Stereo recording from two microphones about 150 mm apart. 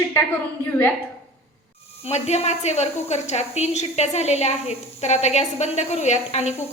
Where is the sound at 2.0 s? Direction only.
45° left (ahead or behind).